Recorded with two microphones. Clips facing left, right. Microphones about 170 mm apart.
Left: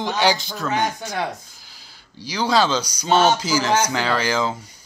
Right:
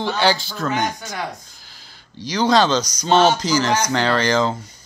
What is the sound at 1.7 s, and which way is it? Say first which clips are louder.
Speech: right 2 dB; 10° left (ahead or behind).